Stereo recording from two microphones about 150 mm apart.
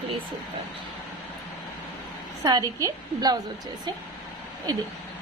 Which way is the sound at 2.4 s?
25° right (ahead or behind).